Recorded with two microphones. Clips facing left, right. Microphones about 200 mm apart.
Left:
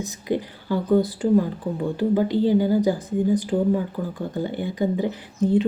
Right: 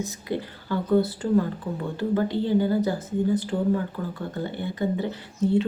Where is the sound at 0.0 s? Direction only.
15° left (ahead or behind).